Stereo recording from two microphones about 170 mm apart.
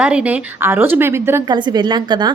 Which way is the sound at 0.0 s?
5° right (ahead or behind).